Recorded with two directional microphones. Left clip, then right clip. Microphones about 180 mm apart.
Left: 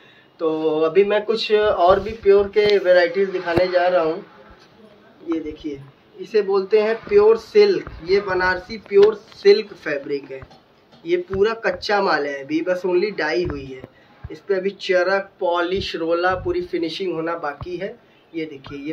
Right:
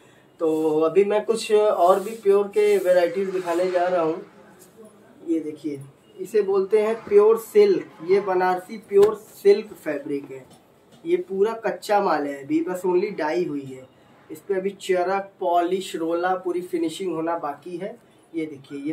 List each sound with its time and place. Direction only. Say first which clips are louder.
0.4 s speech: left 1 dB; 20° right (ahead or behind)
6.3 s speech: left 3 dB; 20° right (ahead or behind)
7.7 s speech: left 1 dB; 45° right (ahead or behind)